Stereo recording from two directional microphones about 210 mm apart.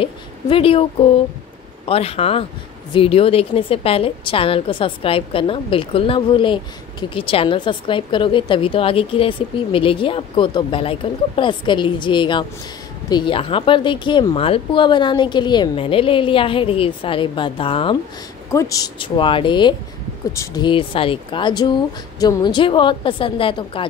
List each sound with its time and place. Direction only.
0.0 s a woman's voice: 25° left (ahead or behind)
1.9 s a woman's voice: 30° left (ahead or behind)
18.5 s a woman's voice: 15° left (ahead or behind)